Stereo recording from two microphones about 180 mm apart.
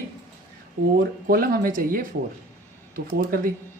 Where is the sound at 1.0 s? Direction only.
55° right (ahead or behind).